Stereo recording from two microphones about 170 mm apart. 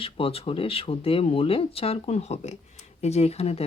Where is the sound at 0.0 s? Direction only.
35° left (ahead or behind).